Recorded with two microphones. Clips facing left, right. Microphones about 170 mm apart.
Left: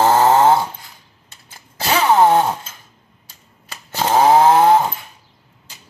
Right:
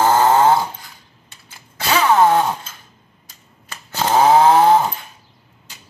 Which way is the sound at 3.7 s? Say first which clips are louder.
Even; 5° left (ahead or behind).